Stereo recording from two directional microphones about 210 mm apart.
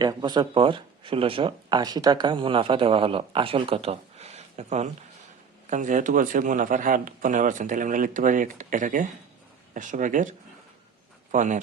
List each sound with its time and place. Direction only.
0.0 s a man's voice: 20° right (ahead or behind); by 11.6 s 35° right (ahead or behind)